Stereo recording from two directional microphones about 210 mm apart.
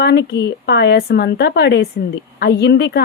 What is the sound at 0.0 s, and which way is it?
A woman's voice, 50° left (ahead or behind).